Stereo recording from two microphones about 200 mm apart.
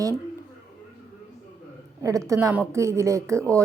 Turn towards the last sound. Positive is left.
turn(degrees=-15)  # may be behind; listen again after turning